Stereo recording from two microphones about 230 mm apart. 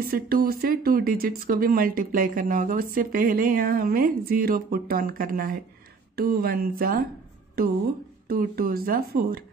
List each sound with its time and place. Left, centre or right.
0.1 s speech: right
8.3 s speech: right